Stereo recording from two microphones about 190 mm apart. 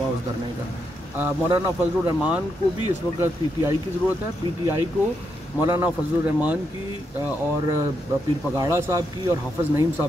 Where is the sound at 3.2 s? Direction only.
15° right (ahead or behind).